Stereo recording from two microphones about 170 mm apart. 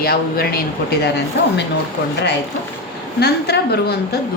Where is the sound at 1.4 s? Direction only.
85° left.